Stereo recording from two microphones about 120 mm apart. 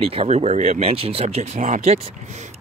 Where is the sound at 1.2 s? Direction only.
70° right (ahead or behind).